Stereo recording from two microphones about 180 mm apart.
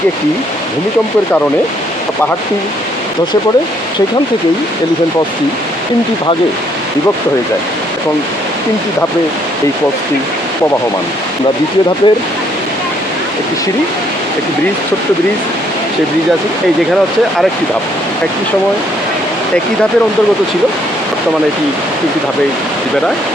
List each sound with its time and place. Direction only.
12.1 s speech: 25° left (ahead or behind)